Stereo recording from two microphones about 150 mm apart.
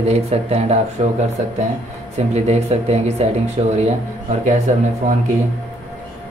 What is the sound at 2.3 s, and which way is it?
Speech, 45° right (ahead or behind).